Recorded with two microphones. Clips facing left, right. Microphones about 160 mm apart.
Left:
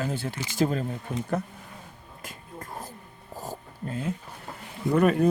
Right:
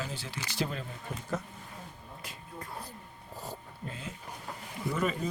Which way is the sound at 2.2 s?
45° left (ahead or behind).